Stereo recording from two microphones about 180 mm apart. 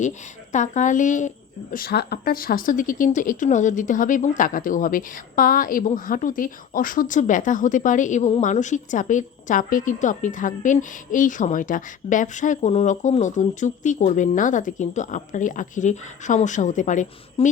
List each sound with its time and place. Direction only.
0.5 s speech: 40° left (ahead or behind)
1.7 s speech: 60° left (ahead or behind); by 17.5 s 45° left (ahead or behind)